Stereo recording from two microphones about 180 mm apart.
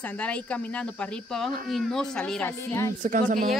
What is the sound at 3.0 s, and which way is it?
Speech, 45° right (ahead or behind).